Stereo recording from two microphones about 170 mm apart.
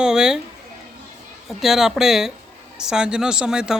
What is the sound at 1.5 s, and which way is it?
Speech, centre (ahead or behind).